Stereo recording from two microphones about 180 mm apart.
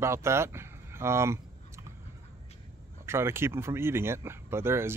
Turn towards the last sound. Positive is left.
turn(degrees=-15)  # may be behind; listen again after turning